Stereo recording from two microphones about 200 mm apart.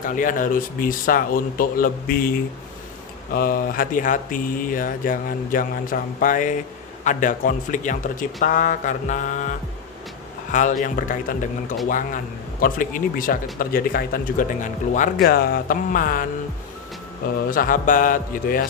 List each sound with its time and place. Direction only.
0.0 s speech: 40° left (ahead or behind)
17.5 s speech: 45° left (ahead or behind)